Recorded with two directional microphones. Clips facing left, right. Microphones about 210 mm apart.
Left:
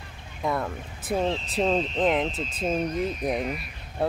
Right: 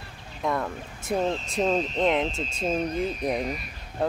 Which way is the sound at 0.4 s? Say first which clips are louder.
Even; 5° left (ahead or behind).